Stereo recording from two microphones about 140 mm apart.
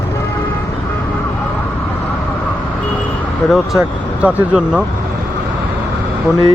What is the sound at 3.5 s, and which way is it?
Speech, centre (ahead or behind).